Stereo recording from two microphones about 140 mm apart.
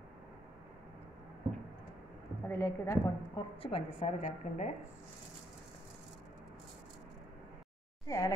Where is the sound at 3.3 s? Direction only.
40° left (ahead or behind); by 4.7 s 60° left (ahead or behind).